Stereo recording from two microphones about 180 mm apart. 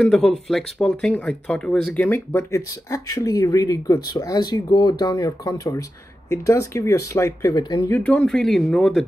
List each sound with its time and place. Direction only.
0.0 s speech: 5° left (ahead or behind); by 7.8 s 20° left (ahead or behind)
7.9 s speech: 5° left (ahead or behind)